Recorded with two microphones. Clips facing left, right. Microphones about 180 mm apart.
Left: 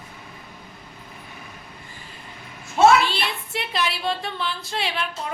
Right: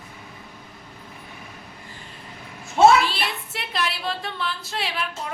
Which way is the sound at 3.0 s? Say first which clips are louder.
Even; centre (ahead or behind).